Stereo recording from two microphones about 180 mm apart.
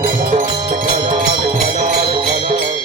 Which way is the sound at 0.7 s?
50° right (ahead or behind).